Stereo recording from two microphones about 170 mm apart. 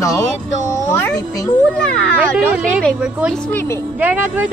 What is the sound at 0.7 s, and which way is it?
Meow, 15° left (ahead or behind).